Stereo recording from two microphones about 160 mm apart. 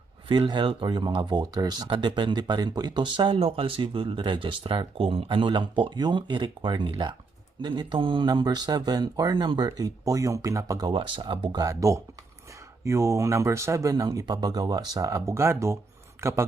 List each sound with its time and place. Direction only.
0.3 s speech: 30° right (ahead or behind)